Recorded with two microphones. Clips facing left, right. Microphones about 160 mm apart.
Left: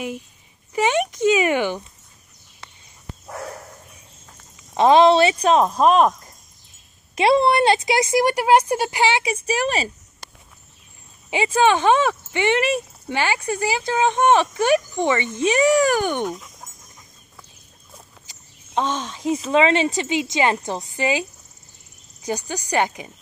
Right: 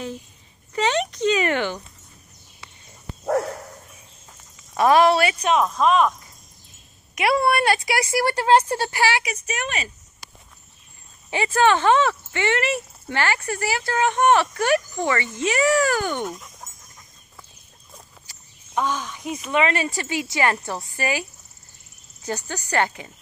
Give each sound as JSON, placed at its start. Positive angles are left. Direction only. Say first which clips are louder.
{"t": 0.7, "sound": "speech", "louder": "left 2 dB", "side_deg": 10}
{"t": 4.7, "sound": "speech", "louder": "left 3 dB", "side_deg": 20}
{"t": 7.2, "sound": "speech", "louder": "left 4 dB", "side_deg": 25}
{"t": 11.2, "sound": "speech", "louder": "left 1 dB", "side_deg": 15}
{"t": 16.3, "sound": "speech", "louder": "left 4 dB", "side_deg": 0}
{"t": 18.2, "sound": "speech", "louder": "left 2 dB", "side_deg": 20}